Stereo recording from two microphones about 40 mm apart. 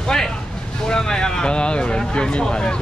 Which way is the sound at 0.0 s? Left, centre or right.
Centre.